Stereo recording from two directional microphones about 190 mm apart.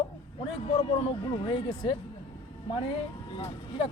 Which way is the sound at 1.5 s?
30° left (ahead or behind).